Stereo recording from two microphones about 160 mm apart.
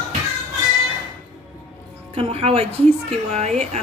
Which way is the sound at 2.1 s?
40° right (ahead or behind).